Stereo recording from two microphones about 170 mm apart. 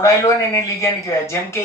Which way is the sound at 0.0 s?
20° left (ahead or behind).